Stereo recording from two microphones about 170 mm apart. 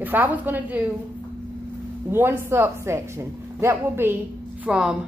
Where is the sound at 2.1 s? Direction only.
15° right (ahead or behind).